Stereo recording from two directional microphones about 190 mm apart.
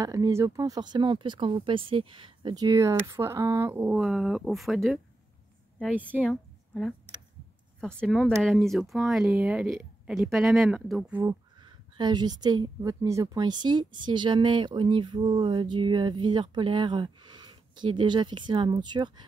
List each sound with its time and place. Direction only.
0.0 s speech: 15° right (ahead or behind)
6.2 s a woman's voice: centre (ahead or behind)
11.2 s a woman's voice: 25° right (ahead or behind)